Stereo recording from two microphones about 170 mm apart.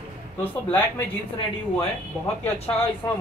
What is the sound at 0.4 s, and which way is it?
Speech, 10° left (ahead or behind).